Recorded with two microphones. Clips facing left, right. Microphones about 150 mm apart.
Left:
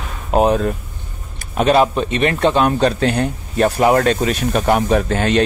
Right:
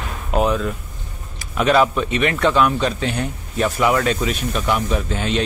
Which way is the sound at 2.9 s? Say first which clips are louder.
Left 6 dB; 65° left (ahead or behind).